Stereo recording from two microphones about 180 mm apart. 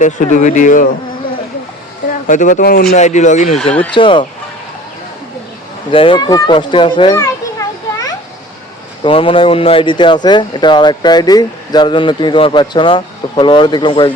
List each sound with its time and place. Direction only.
0.0 s speech: 45° left (ahead or behind)
2.2 s speech: 45° left (ahead or behind)
3.6 s speech: 5° left (ahead or behind)
3.9 s speech: 25° left (ahead or behind)
5.9 s speech: 30° left (ahead or behind)
7.2 s children playing: 20° left (ahead or behind)
9.0 s speech: 30° left (ahead or behind)